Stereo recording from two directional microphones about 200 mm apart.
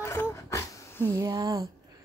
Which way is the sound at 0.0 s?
15° left (ahead or behind).